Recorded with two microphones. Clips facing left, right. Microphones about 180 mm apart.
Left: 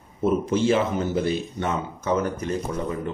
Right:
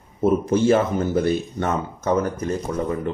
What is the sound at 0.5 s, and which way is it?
Speech, 45° right (ahead or behind).